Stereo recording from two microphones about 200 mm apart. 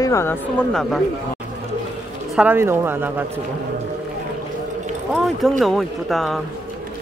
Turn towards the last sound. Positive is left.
turn(degrees=0)  # may be behind; listen again after turning